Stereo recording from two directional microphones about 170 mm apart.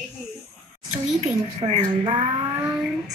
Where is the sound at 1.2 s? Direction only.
40° right (ahead or behind).